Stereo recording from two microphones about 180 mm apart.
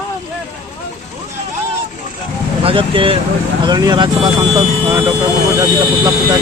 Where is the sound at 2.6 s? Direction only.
30° right (ahead or behind).